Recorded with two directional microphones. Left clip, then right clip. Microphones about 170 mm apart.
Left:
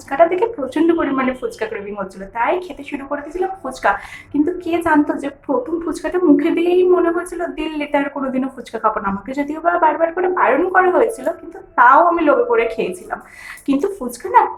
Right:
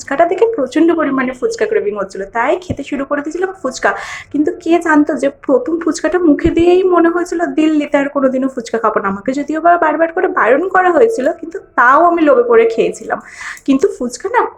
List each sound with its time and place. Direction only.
0.1 s a woman's voice: 30° right (ahead or behind)